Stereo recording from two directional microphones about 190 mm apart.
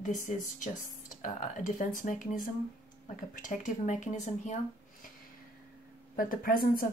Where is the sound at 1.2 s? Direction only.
45° left (ahead or behind).